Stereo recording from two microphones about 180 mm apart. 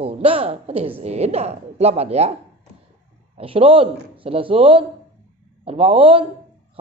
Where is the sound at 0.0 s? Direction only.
30° right (ahead or behind).